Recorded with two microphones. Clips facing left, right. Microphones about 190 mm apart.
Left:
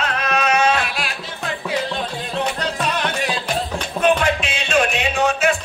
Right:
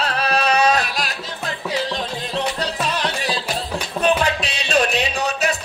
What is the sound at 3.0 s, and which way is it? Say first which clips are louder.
Music: left 1 dB; 35° right (ahead or behind).